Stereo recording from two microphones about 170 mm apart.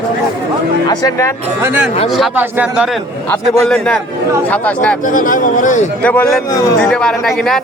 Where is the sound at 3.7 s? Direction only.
5° left (ahead or behind).